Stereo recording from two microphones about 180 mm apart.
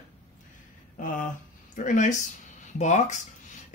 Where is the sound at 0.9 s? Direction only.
45° left (ahead or behind).